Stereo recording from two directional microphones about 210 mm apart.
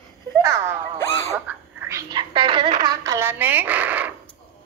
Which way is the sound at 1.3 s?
10° right (ahead or behind).